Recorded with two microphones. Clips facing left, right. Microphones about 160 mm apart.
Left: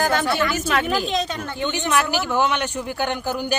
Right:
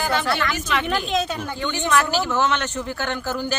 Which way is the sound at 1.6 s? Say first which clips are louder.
Even; 15° left (ahead or behind).